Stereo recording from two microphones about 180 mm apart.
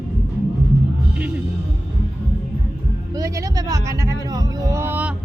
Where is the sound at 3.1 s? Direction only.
20° right (ahead or behind).